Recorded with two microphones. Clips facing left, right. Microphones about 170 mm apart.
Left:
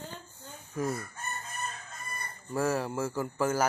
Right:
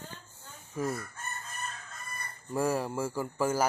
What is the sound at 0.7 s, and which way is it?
Chicken, centre (ahead or behind).